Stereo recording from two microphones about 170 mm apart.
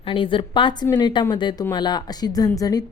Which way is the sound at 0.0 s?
30° left (ahead or behind).